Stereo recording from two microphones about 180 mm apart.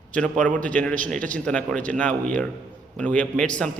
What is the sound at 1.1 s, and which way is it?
Speech, 45° right (ahead or behind).